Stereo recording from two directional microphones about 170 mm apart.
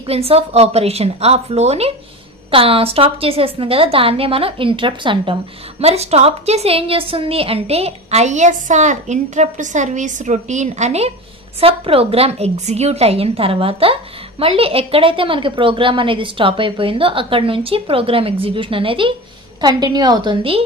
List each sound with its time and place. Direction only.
0.0 s a woman's voice: 35° right (ahead or behind)